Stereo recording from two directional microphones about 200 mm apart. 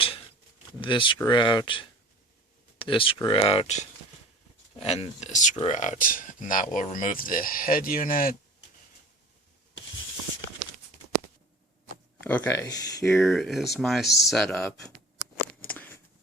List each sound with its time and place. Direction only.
0.8 s speech: 25° left (ahead or behind); by 8.4 s 45° left (ahead or behind)
12.2 s speech: 10° left (ahead or behind)
13.2 s speech: centre (ahead or behind)
15.6 s a sound: 5° left (ahead or behind)